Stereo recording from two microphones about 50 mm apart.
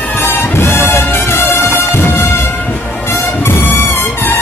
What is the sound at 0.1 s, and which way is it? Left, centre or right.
Music, left.